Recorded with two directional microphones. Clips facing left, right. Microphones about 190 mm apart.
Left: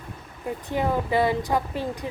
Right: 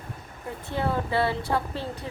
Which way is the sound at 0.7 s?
15° left (ahead or behind).